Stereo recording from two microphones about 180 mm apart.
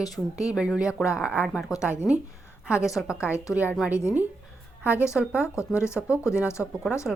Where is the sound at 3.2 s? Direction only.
15° left (ahead or behind).